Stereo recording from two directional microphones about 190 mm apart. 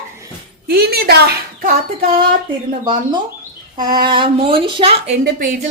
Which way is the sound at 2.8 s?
20° right (ahead or behind).